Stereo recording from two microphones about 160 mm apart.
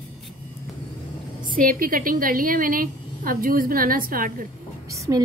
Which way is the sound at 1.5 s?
60° right (ahead or behind).